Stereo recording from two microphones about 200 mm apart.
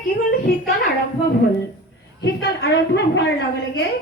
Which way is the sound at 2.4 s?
60° left (ahead or behind).